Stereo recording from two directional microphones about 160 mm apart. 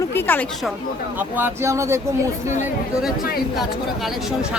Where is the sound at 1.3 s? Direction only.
15° right (ahead or behind).